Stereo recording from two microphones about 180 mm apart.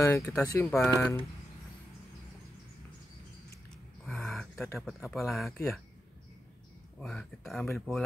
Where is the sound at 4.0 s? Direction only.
5° left (ahead or behind).